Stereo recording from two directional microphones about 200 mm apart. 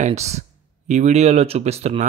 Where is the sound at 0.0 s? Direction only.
35° right (ahead or behind).